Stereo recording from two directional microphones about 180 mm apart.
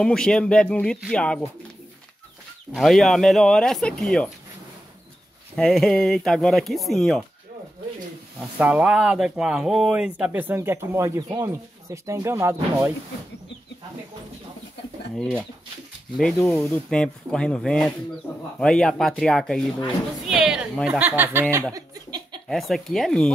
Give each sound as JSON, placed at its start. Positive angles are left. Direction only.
{"t": 0.0, "sound": "speech", "side_deg": 5}
{"t": 2.7, "sound": "speech", "side_deg": 0}
{"t": 5.6, "sound": "speech", "side_deg": 5}
{"t": 8.4, "sound": "speech", "side_deg": -5}
{"t": 16.2, "sound": "speech", "side_deg": 5}
{"t": 21.7, "sound": "a sound", "side_deg": -20}
{"t": 22.5, "sound": "speech", "side_deg": 0}